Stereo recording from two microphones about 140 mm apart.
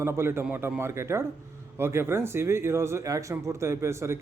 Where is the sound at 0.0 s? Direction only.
20° right (ahead or behind).